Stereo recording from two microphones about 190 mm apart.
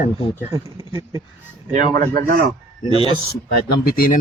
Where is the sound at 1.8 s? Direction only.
45° right (ahead or behind).